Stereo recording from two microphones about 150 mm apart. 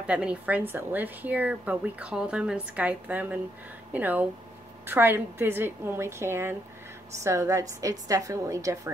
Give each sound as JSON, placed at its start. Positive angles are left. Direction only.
{"t": 0.0, "sound": "a woman's voice", "side_deg": -5}